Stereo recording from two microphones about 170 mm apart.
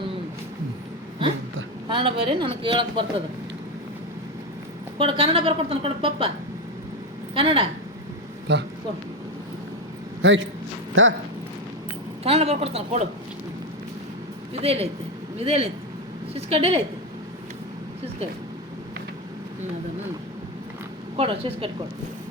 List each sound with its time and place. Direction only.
1.9 s a woman's voice: 30° right (ahead or behind)
4.9 s a woman's voice: 30° right (ahead or behind)
7.3 s a woman's voice: 30° right (ahead or behind)
8.5 s speech: 90° right
10.2 s speech: 90° right
12.2 s a woman's voice: 35° right (ahead or behind)
14.5 s a woman's voice: 35° right (ahead or behind)
21.2 s a woman's voice: 35° right (ahead or behind)